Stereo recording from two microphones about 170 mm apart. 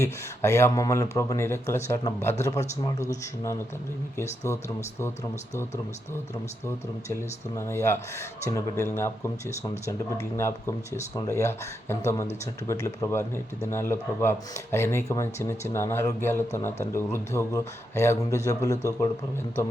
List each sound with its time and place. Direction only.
0.0 s a man's voice: 15° left (ahead or behind)
6.7 s speech: 15° left (ahead or behind)